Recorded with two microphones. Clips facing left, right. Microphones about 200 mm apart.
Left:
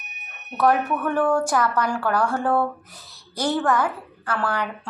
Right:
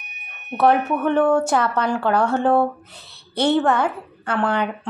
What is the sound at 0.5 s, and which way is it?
A woman's voice, 25° right (ahead or behind).